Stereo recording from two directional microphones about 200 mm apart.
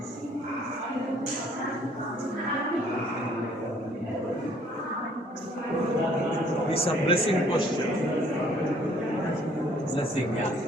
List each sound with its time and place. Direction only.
6.7 s a man's voice: 30° left (ahead or behind)